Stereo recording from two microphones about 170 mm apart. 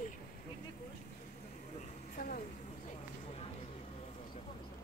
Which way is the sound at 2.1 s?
50° left (ahead or behind).